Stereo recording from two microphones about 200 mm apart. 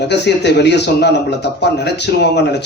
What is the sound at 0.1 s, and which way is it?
Speech, 60° left (ahead or behind).